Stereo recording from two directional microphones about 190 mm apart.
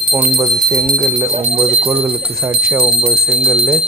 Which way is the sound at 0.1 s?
15° right (ahead or behind).